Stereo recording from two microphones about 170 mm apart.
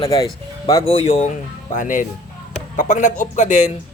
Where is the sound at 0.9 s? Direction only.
35° left (ahead or behind).